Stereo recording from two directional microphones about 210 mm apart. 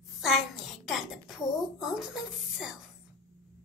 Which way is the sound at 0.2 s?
Centre (ahead or behind).